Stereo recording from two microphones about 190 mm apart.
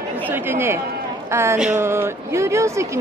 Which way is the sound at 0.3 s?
10° right (ahead or behind).